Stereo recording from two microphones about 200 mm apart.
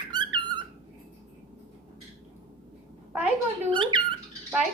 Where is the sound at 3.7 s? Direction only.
25° right (ahead or behind).